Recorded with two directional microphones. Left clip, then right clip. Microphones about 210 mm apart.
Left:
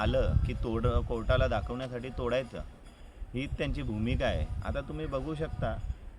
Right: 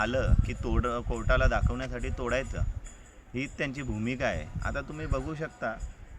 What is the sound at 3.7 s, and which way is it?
A man's voice, centre (ahead or behind).